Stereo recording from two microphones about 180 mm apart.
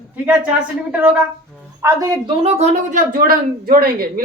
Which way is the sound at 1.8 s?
20° right (ahead or behind).